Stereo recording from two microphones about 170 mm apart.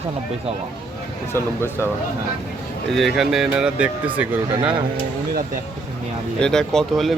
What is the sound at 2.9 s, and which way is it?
Speech, centre (ahead or behind).